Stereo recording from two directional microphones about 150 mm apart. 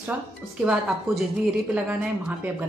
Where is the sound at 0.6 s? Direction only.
10° right (ahead or behind).